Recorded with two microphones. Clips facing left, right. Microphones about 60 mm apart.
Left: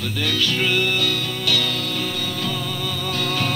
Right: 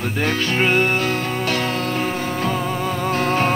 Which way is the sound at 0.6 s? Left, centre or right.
Right.